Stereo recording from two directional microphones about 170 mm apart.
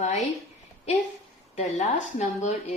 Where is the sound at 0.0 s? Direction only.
45° left (ahead or behind).